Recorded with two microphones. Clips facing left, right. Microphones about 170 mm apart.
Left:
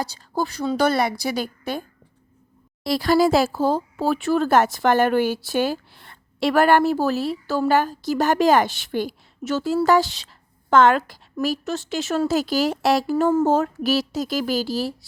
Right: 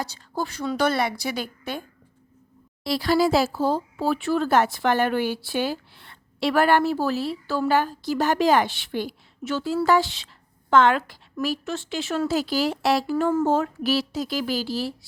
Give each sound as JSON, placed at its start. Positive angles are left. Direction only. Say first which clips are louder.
{"t": 0.0, "sound": "a woman's voice", "louder": "left 4 dB", "side_deg": 35}
{"t": 2.8, "sound": "a woman's voice", "louder": "left 3 dB", "side_deg": 45}